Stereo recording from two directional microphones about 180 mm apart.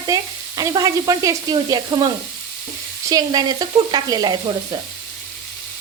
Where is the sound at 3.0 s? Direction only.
20° right (ahead or behind).